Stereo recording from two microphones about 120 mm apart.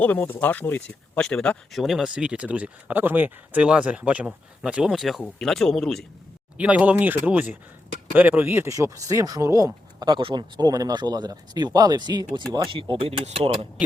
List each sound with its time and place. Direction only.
0.0 s speech: 15° left (ahead or behind)
1.8 s speech: 5° right (ahead or behind)
6.6 s speech: 10° right (ahead or behind); by 12.4 s 35° right (ahead or behind)
12.7 s speech: 50° right (ahead or behind)